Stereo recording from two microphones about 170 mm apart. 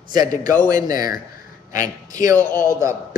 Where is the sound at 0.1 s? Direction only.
20° right (ahead or behind).